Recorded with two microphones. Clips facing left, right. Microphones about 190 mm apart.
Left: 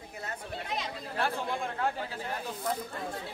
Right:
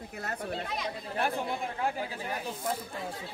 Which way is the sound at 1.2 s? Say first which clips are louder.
Even; 15° right (ahead or behind).